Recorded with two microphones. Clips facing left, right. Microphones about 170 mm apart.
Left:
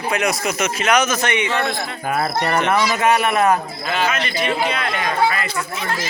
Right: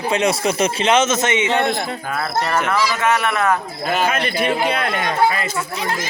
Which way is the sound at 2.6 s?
20° left (ahead or behind).